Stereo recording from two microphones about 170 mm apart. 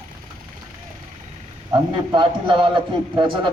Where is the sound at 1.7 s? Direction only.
30° right (ahead or behind).